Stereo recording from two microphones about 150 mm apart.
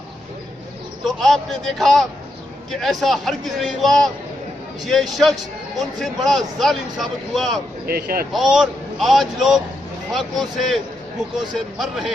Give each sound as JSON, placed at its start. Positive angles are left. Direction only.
{"t": 1.0, "sound": "a man's voice", "side_deg": 0}
{"t": 7.9, "sound": "speech", "side_deg": -85}
{"t": 8.3, "sound": "a man's voice", "side_deg": 0}